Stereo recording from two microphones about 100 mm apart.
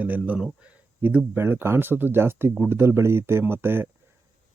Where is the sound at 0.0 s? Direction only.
15° right (ahead or behind).